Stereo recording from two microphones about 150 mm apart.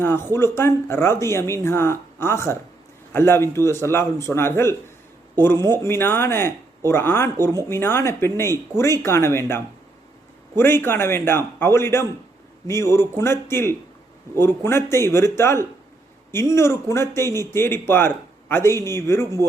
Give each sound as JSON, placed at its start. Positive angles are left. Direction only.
{"t": 0.0, "sound": "speech", "side_deg": 15}
{"t": 19.2, "sound": "a man's voice", "side_deg": -25}